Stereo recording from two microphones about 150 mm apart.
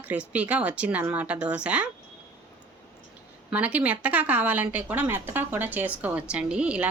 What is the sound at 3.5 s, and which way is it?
Speech, 10° right (ahead or behind).